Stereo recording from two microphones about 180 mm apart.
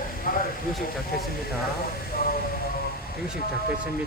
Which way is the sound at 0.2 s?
50° left (ahead or behind).